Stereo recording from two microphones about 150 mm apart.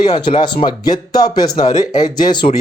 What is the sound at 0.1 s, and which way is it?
Speech, 30° left (ahead or behind).